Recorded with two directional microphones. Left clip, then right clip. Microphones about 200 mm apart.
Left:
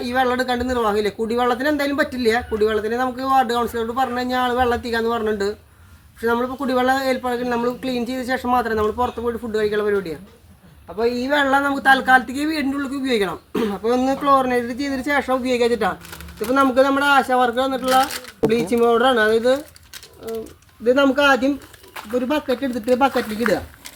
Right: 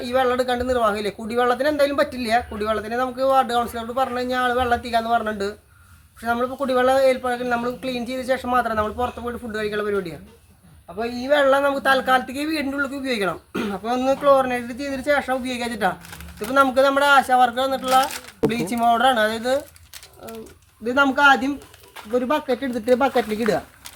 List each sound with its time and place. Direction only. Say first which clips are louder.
0.0 s a woman's voice: even; 15° right (ahead or behind)
16.6 s a man's voice: even; 35° right (ahead or behind)
17.8 s speech: left 1 dB; 5° right (ahead or behind)
18.5 s a man's voice: left 3 dB; 30° right (ahead or behind)
20.8 s speech: left 1 dB; 25° right (ahead or behind)